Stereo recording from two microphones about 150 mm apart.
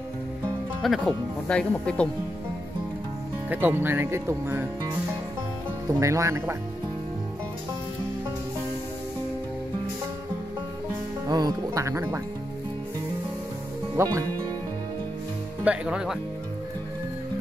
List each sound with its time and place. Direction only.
0.8 s speech: centre (ahead or behind)
3.4 s speech: 10° right (ahead or behind)
5.9 s speech: 20° right (ahead or behind)
11.2 s speech: 25° right (ahead or behind)
14.0 s speech: 20° right (ahead or behind)
15.6 s speech: 10° right (ahead or behind)